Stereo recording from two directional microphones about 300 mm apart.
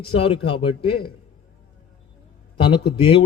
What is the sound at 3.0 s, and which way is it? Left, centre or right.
Speech, centre.